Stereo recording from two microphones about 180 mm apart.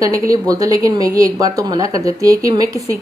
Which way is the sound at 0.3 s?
20° right (ahead or behind).